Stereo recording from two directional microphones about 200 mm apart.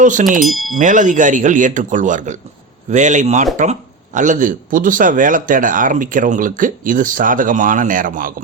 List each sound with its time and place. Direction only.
0.0 s a man's voice: 40° right (ahead or behind)
0.3 s speech: centre (ahead or behind)
0.8 s a man's voice: 40° right (ahead or behind)